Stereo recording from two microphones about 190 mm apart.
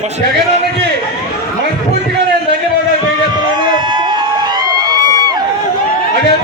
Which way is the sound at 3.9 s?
25° right (ahead or behind).